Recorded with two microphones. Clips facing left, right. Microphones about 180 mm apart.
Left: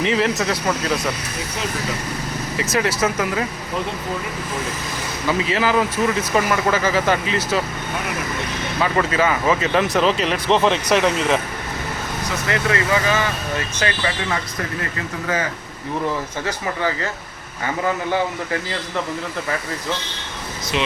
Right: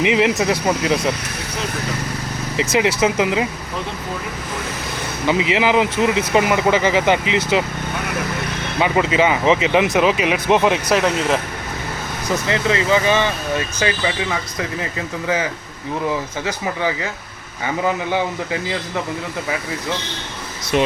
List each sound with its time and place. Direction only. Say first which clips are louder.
0.0 s speech: right 3 dB; 15° right (ahead or behind)
2.6 s speech: right 4 dB; 20° right (ahead or behind)
5.3 s speech: right 3 dB; 20° right (ahead or behind)
8.8 s speech: right 3 dB; 20° right (ahead or behind); by 11.3 s centre (ahead or behind)
12.5 s speech: right 2 dB; 20° right (ahead or behind)
16.5 s speech: right 2 dB; 15° right (ahead or behind)
20.7 s speech: right 6 dB; 50° right (ahead or behind)